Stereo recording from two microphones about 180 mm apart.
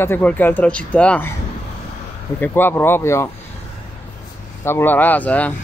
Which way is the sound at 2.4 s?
10° left (ahead or behind).